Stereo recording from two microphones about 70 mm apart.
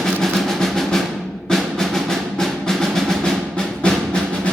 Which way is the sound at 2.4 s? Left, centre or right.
Centre.